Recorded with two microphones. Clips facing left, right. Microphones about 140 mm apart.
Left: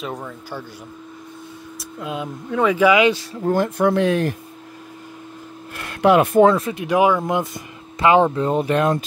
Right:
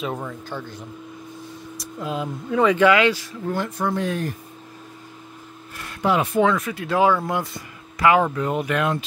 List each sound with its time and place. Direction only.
0.0 s speech: centre (ahead or behind)
1.8 s speech: centre (ahead or behind)
3.4 s speech: 50° left (ahead or behind)
3.8 s speech: 75° left (ahead or behind)
5.8 s speech: 65° left (ahead or behind)
6.4 s speech: 30° left (ahead or behind)